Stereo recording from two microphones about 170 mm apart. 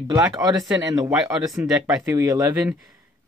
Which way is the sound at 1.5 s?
Centre (ahead or behind).